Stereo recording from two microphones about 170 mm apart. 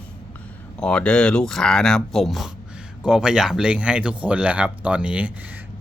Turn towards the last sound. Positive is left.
turn(degrees=-10)  # may be behind; listen again after turning